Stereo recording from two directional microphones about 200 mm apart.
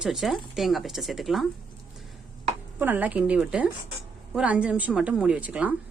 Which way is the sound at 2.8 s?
10° right (ahead or behind).